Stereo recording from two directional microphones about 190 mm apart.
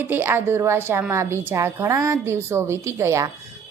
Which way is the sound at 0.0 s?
10° right (ahead or behind).